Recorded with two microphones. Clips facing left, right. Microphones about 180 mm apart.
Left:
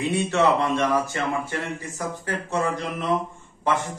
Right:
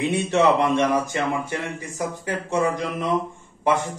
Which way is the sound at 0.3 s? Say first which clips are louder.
Right 3 dB; 20° right (ahead or behind).